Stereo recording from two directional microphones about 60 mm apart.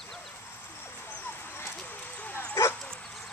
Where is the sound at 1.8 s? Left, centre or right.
Left.